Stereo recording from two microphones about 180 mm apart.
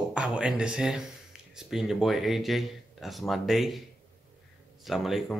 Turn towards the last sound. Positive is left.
turn(degrees=0)  # may be behind; listen again after turning